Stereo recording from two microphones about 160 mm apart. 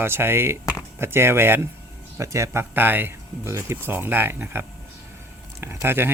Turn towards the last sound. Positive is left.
turn(degrees=-15)  # may be behind; listen again after turning